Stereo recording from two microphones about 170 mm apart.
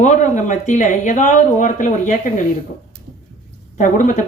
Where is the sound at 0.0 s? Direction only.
45° left (ahead or behind).